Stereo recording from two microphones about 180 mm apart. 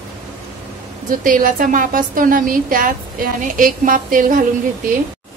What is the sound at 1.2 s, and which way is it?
A woman's voice, 50° right (ahead or behind).